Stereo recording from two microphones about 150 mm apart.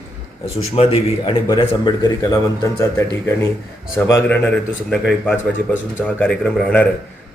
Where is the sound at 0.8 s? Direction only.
40° left (ahead or behind).